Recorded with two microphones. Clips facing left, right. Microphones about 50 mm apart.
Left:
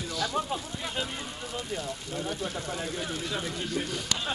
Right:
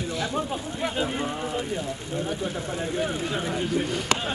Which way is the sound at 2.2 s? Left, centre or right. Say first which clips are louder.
Right 2 dB; centre.